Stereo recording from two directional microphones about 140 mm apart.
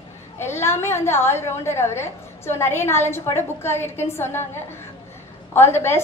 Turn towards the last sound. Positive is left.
turn(degrees=15)  # may be behind; listen again after turning